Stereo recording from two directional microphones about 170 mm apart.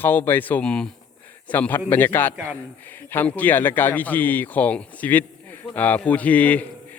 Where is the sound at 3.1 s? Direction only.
10° left (ahead or behind).